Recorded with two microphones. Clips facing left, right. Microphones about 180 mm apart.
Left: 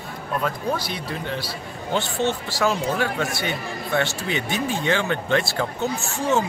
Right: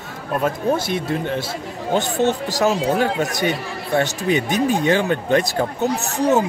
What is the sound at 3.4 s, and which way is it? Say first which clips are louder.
Speech: right 5 dB; 40° right (ahead or behind).